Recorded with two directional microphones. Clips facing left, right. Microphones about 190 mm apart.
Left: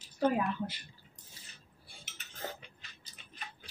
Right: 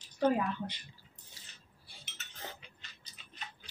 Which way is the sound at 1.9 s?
50° left (ahead or behind).